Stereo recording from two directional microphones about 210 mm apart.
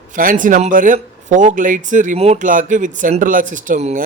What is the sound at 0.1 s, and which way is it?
Speech, 40° right (ahead or behind).